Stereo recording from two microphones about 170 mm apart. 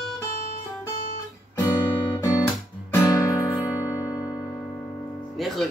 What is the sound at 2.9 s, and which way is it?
Guitar, 20° left (ahead or behind).